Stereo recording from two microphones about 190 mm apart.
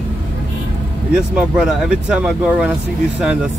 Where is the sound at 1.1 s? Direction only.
5° right (ahead or behind).